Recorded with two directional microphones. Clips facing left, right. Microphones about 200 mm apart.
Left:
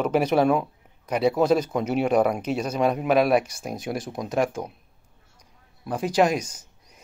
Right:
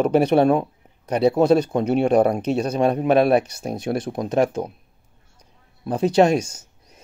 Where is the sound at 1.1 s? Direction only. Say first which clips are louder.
Right 4 dB; 30° right (ahead or behind).